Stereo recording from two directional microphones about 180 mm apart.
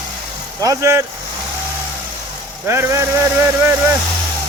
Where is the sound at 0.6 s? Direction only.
20° right (ahead or behind).